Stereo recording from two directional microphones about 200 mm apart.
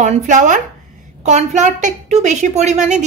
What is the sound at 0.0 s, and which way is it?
A woman's voice, 40° right (ahead or behind).